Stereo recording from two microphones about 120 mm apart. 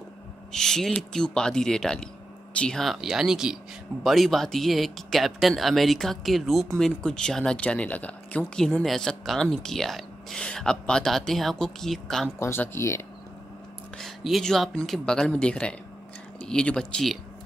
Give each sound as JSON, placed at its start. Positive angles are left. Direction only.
{"t": 0.5, "sound": "speech", "side_deg": 5}
{"t": 12.4, "sound": "speech", "side_deg": 20}
{"t": 13.9, "sound": "speech", "side_deg": 0}